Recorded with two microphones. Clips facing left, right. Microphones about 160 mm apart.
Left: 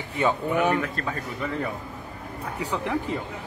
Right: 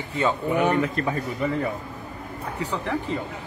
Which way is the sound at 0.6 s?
15° right (ahead or behind).